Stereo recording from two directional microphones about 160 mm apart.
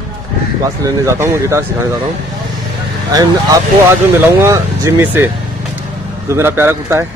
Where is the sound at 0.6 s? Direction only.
20° right (ahead or behind).